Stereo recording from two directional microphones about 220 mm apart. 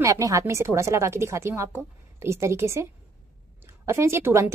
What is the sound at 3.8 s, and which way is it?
Speech, 10° right (ahead or behind).